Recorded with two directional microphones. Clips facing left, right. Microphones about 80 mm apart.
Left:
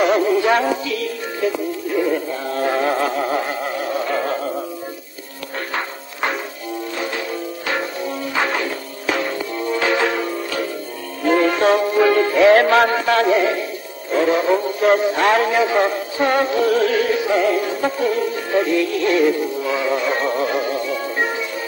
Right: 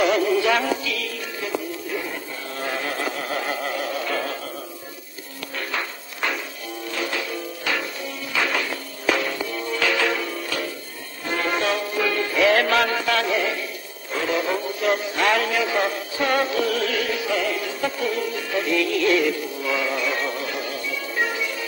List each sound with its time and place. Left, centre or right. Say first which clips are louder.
0.0 s music: left 3 dB; left
2.8 s a sound: left 8 dB; left
7.0 s music: even; left
11.6 s music: left 9 dB; left
14.2 s a man's voice: left 6 dB; left